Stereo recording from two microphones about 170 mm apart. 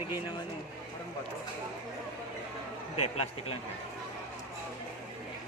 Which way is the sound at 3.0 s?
40° left (ahead or behind).